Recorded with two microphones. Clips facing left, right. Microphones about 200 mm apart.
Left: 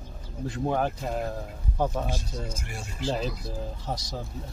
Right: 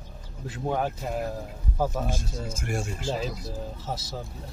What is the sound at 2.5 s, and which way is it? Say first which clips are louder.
Speech: right 7 dB; 50° right (ahead or behind).